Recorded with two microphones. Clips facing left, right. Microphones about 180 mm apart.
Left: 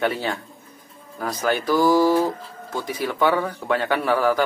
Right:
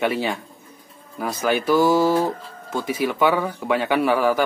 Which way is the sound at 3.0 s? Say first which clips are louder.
Right 1 dB; 10° right (ahead or behind).